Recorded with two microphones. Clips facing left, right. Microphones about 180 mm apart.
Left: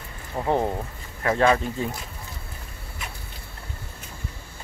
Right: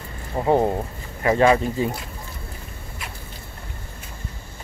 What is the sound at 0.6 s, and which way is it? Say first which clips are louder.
Speech: right 4 dB; 20° right (ahead or behind).